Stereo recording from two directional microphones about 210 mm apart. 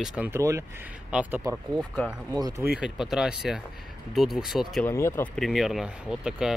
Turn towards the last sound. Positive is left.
turn(degrees=-5)  # may be behind; listen again after turning